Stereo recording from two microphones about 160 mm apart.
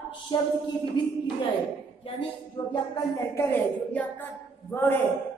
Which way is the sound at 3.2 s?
15° left (ahead or behind).